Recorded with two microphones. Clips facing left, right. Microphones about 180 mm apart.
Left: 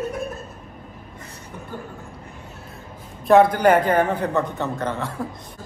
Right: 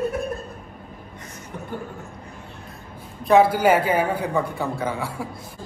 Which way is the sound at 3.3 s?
5° right (ahead or behind).